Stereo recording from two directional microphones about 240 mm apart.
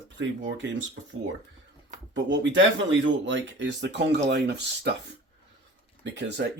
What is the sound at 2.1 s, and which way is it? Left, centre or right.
Speech, right.